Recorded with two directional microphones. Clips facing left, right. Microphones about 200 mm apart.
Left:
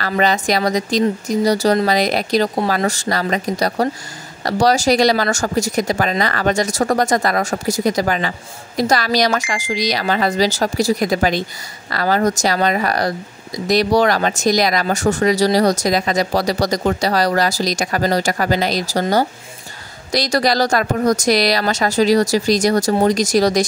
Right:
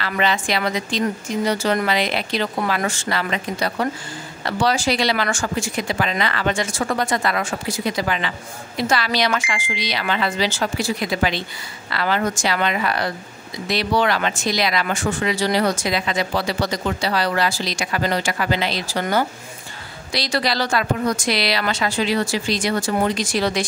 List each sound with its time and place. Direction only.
0.1 s speech: 40° left (ahead or behind)